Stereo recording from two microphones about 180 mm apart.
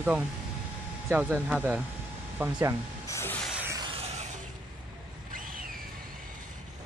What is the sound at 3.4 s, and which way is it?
Music, 5° right (ahead or behind).